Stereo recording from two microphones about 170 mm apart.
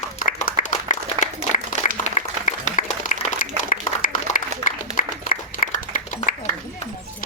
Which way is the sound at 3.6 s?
50° left (ahead or behind).